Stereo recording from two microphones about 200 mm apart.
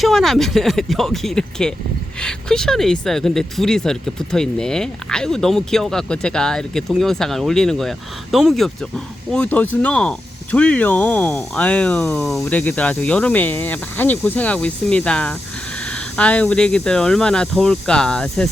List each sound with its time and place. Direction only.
0.0 s speech: centre (ahead or behind)